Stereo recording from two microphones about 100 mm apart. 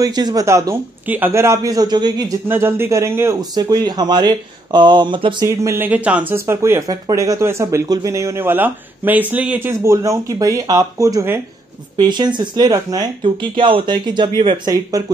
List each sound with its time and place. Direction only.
0.0 s speech: 45° right (ahead or behind)
0.5 s speech: 30° right (ahead or behind)
1.0 s speech: 20° right (ahead or behind); by 2.3 s 45° right (ahead or behind)
2.4 s speech: 25° right (ahead or behind)
3.3 s speech: 40° right (ahead or behind)
5.4 s speech: 30° right (ahead or behind)
5.9 s speech: 15° right (ahead or behind)
6.3 s speech: 25° right (ahead or behind)
6.9 s speech: 35° right (ahead or behind); by 9.7 s 15° right (ahead or behind)
9.7 s speech: 30° right (ahead or behind)
12.0 s speech: 45° right (ahead or behind)
13.2 s speech: 60° right (ahead or behind)
14.4 s speech: 60° right (ahead or behind)
14.7 s speech: 35° right (ahead or behind)